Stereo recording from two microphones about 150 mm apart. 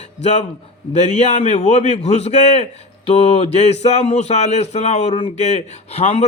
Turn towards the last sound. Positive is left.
turn(degrees=45)  # may be behind; listen again after turning